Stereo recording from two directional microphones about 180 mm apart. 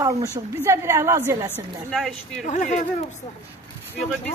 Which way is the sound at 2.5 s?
45° left (ahead or behind).